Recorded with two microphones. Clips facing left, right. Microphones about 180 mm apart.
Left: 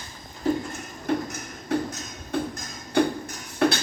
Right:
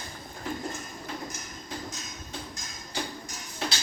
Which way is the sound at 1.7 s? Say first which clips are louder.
Left 13 dB; 65° left (ahead or behind).